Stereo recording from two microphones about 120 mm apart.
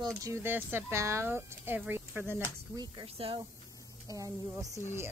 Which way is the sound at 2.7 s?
35° right (ahead or behind).